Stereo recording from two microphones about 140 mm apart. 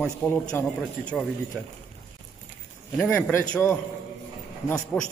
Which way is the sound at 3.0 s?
10° left (ahead or behind).